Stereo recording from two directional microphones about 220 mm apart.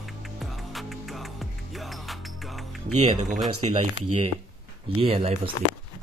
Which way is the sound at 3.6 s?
30° right (ahead or behind).